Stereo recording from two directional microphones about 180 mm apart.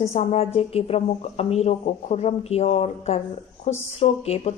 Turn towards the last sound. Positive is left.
turn(degrees=35)  # may be behind; listen again after turning